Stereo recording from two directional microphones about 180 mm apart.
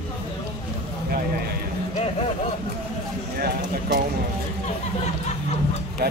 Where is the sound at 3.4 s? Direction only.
75° right (ahead or behind).